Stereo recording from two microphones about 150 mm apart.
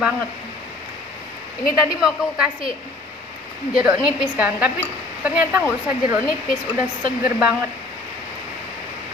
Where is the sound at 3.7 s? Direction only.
5° right (ahead or behind).